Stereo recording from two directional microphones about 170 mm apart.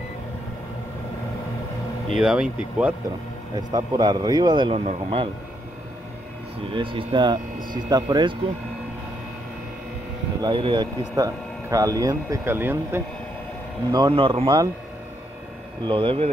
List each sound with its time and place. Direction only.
2.0 s speech: 5° right (ahead or behind)
3.5 s speech: 25° right (ahead or behind)
6.7 s speech: 30° right (ahead or behind)
10.4 s speech: 30° right (ahead or behind); by 13.0 s 15° right (ahead or behind)
13.9 s speech: 25° right (ahead or behind)
15.8 s speech: 30° right (ahead or behind)